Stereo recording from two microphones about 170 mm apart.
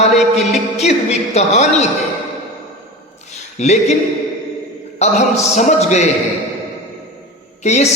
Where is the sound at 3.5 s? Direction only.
40° left (ahead or behind).